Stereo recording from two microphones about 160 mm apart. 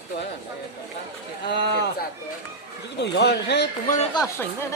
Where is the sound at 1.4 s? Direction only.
90° left.